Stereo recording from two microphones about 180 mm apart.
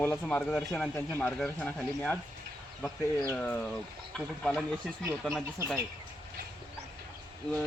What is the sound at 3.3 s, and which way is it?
Speech, 5° left (ahead or behind).